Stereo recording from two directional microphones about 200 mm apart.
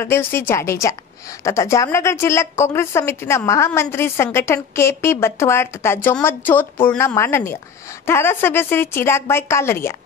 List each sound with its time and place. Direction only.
0.0 s a woman's voice: 10° left (ahead or behind)